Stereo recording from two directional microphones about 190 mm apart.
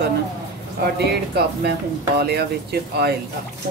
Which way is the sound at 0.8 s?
60° right (ahead or behind).